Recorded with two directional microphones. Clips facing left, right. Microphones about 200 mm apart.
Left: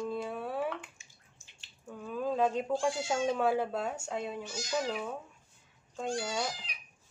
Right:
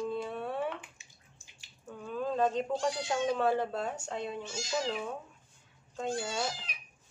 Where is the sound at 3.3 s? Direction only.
5° left (ahead or behind).